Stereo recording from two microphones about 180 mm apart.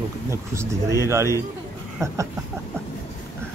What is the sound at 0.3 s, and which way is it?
Speech, 15° right (ahead or behind).